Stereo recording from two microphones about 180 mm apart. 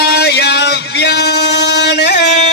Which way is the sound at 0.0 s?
65° left (ahead or behind).